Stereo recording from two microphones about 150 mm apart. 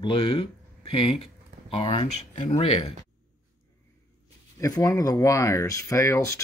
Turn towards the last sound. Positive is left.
turn(degrees=20)  # may be behind; listen again after turning